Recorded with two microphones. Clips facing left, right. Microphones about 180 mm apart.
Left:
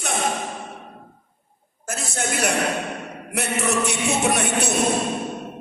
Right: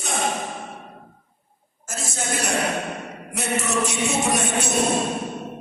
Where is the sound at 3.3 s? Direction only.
60° left (ahead or behind).